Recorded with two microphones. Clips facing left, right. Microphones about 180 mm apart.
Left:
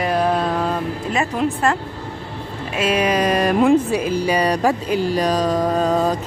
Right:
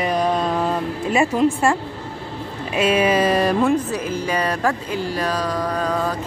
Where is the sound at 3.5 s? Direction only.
15° left (ahead or behind).